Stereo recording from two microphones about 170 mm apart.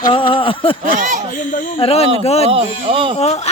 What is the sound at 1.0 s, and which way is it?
Speech, 50° right (ahead or behind).